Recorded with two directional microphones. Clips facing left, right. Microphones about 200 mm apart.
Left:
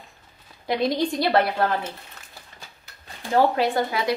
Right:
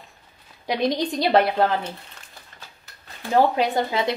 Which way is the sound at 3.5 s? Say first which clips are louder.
Right 1 dB; 20° right (ahead or behind).